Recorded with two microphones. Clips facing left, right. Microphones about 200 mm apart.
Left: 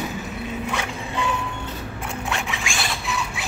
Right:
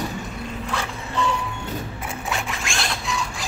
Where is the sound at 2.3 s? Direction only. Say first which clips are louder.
Right 1 dB; centre (ahead or behind).